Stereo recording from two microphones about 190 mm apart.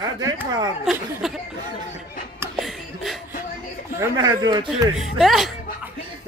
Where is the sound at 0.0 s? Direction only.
20° right (ahead or behind).